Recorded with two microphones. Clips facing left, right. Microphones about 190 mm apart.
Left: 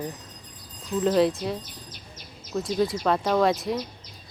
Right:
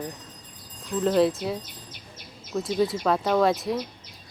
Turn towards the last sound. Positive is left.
turn(degrees=0)  # may be behind; listen again after turning